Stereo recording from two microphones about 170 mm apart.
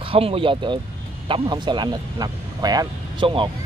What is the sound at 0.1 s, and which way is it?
Speech, 35° right (ahead or behind).